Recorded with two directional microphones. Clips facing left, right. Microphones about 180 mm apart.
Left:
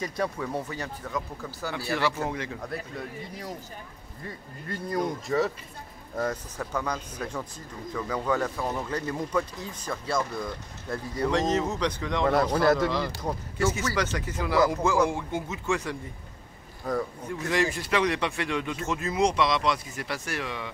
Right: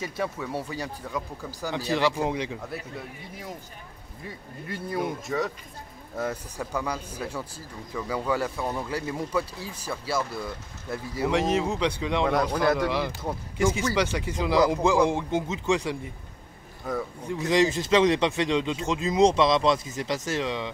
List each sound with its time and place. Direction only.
0.0 s speech: 5° right (ahead or behind)
2.7 s speech: 5° right (ahead or behind)
12.3 s speech: 5° left (ahead or behind)
12.7 s speech: 10° right (ahead or behind)
16.9 s speech: centre (ahead or behind)
17.3 s speech: 20° right (ahead or behind)